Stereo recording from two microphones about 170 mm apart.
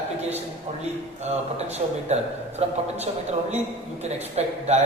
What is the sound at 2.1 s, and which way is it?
Speech, 40° right (ahead or behind).